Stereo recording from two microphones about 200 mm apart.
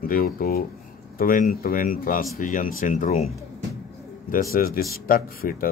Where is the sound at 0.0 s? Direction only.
45° left (ahead or behind).